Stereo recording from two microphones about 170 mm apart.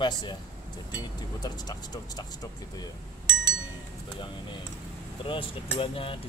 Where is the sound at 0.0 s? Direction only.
25° left (ahead or behind).